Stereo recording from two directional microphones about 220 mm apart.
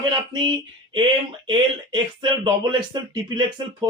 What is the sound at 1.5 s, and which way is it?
Speech, 20° right (ahead or behind).